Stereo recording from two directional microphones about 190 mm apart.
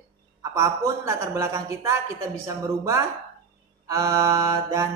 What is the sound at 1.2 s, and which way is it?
Speech, 15° right (ahead or behind).